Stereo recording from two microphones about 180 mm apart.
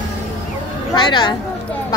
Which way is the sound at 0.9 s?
25° left (ahead or behind).